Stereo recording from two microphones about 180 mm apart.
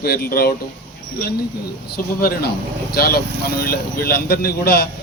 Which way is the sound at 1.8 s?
60° left (ahead or behind).